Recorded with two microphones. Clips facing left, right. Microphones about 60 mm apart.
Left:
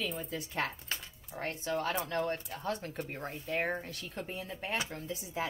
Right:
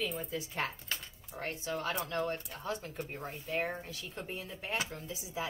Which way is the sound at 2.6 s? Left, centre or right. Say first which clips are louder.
Left 2 dB; left.